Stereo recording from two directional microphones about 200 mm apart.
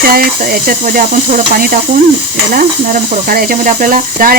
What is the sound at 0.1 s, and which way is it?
Speech, 45° right (ahead or behind).